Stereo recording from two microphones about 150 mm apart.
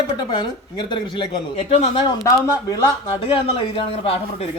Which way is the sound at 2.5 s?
25° left (ahead or behind).